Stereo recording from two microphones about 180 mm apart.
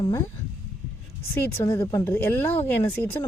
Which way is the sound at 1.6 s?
15° left (ahead or behind).